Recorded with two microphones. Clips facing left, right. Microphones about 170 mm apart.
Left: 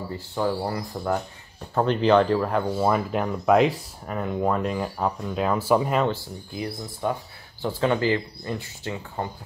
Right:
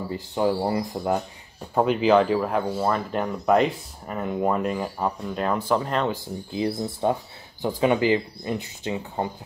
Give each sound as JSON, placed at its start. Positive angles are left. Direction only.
{"t": 0.1, "sound": "speech", "side_deg": -15}
{"t": 1.8, "sound": "speech", "side_deg": -5}
{"t": 6.1, "sound": "speech", "side_deg": -25}